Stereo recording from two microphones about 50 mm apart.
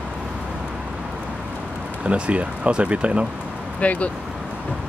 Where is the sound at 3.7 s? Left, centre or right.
Left.